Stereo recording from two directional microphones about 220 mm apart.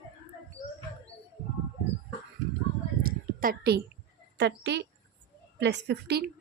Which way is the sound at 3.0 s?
40° right (ahead or behind).